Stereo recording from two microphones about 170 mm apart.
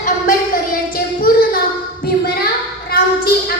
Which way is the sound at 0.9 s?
60° left (ahead or behind).